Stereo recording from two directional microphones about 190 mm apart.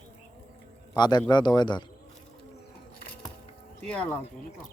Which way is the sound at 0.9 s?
20° left (ahead or behind).